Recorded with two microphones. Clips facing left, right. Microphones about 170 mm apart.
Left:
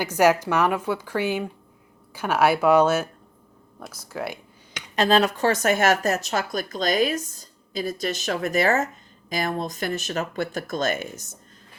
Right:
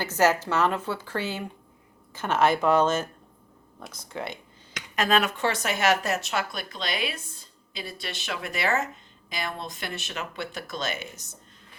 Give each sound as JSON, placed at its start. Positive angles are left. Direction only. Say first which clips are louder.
{"t": 0.0, "sound": "a woman's voice", "louder": "left 4 dB", "side_deg": 15}
{"t": 4.9, "sound": "speech", "louder": "left 4 dB", "side_deg": 30}